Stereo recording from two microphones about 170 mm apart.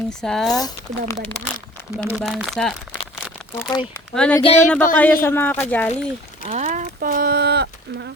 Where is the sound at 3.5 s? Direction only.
15° left (ahead or behind).